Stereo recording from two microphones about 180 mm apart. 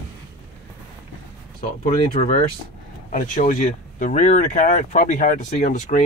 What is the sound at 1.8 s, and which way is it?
Speech, 35° left (ahead or behind).